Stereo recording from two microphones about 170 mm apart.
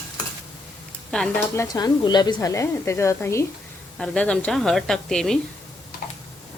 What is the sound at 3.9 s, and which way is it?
Speech, 5° left (ahead or behind).